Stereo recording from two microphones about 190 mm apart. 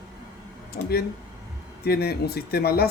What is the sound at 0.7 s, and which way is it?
Speech, 55° left (ahead or behind).